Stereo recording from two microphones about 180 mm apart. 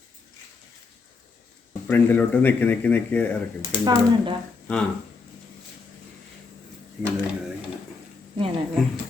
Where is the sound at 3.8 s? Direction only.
25° right (ahead or behind).